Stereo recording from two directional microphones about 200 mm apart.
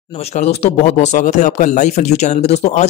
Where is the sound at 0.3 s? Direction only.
30° left (ahead or behind).